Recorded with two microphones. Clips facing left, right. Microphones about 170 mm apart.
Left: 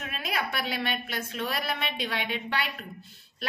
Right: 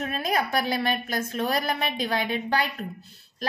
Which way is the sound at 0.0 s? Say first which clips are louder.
Right 6 dB; 40° right (ahead or behind).